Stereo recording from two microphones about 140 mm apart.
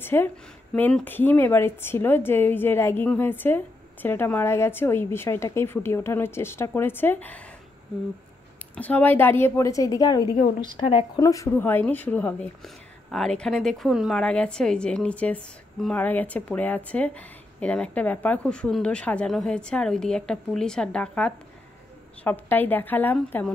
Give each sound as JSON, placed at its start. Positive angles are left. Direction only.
{"t": 0.0, "sound": "a woman's voice", "side_deg": 15}
{"t": 8.7, "sound": "a woman's voice", "side_deg": 10}
{"t": 11.1, "sound": "a woman's voice", "side_deg": 20}